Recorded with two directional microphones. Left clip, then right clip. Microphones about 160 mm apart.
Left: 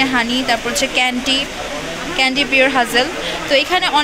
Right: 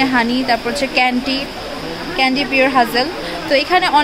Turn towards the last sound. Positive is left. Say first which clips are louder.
# right 1 dB
turn(degrees=-15)  # may be behind; listen again after turning